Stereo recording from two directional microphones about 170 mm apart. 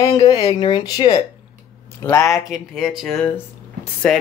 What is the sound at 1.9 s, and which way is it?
Speech, 20° left (ahead or behind).